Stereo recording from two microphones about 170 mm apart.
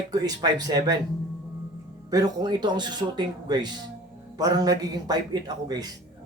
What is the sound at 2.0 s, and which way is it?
A man's voice, 20° right (ahead or behind).